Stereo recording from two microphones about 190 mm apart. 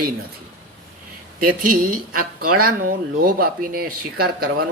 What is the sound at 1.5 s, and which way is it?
Speech, 45° right (ahead or behind).